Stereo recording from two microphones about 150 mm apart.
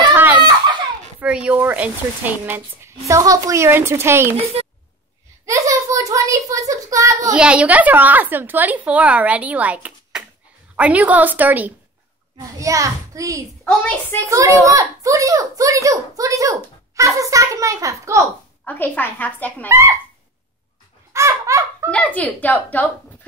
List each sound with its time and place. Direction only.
0.1 s a sound: 10° right (ahead or behind)
1.2 s speech: 10° right (ahead or behind)
4.6 s a sound: 40° right (ahead or behind)
5.4 s a child's voice: 20° right (ahead or behind)
7.3 s a child's voice: 5° right (ahead or behind)
13.7 s speech: 10° left (ahead or behind)
14.3 s a child's voice: 20° right (ahead or behind)
18.6 s speech: 10° left (ahead or behind)
21.1 s baby laughter: 20° right (ahead or behind)
21.9 s speech: 10° left (ahead or behind)